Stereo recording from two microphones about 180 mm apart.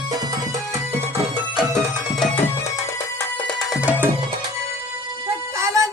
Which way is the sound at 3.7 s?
10° right (ahead or behind).